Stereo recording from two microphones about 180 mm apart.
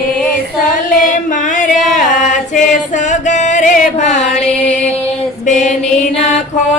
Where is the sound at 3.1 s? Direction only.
40° left (ahead or behind).